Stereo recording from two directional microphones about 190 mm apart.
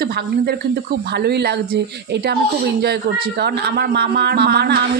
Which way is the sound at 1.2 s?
60° right (ahead or behind).